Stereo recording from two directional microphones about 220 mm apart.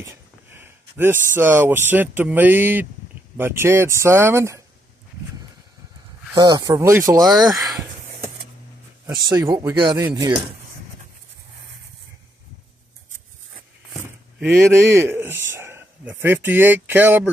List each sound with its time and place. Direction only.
0.0 s a sound: 10° right (ahead or behind)
1.3 s speech: 10° right (ahead or behind)
6.3 s speech: 20° right (ahead or behind)
14.8 s speech: 15° right (ahead or behind)